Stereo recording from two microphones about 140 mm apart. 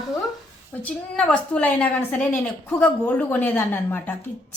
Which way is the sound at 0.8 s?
10° left (ahead or behind).